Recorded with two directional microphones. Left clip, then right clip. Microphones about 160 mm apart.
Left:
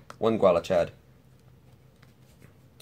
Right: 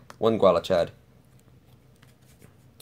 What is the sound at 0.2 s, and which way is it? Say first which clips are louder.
Speech: right 2 dB; 30° right (ahead or behind).